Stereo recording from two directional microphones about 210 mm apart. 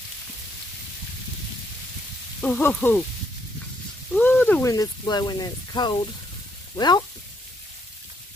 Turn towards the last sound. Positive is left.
turn(degrees=20)  # may be behind; listen again after turning